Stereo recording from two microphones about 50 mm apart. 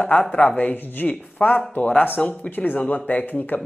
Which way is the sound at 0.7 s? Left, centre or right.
Left.